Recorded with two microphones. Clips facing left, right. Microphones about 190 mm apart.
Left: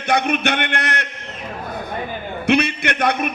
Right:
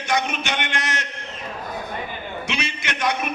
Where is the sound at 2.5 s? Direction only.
60° left (ahead or behind).